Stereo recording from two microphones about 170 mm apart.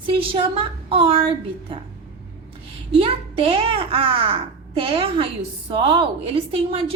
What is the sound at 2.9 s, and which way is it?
A woman's voice, 35° right (ahead or behind).